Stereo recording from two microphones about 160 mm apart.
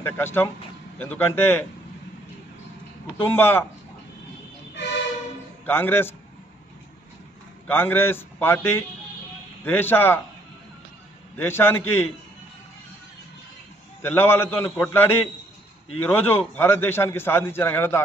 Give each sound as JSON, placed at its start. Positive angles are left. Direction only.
{"t": 0.0, "sound": "a man's voice", "side_deg": 15}
{"t": 3.3, "sound": "a man's voice", "side_deg": 15}
{"t": 4.8, "sound": "train", "side_deg": 90}
{"t": 5.7, "sound": "a man's voice", "side_deg": 15}
{"t": 7.6, "sound": "a man's voice", "side_deg": 15}
{"t": 11.3, "sound": "a man's voice", "side_deg": 15}
{"t": 14.0, "sound": "a man's voice", "side_deg": 15}